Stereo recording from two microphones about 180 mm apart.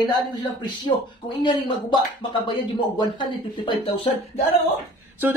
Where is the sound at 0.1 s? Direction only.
25° left (ahead or behind).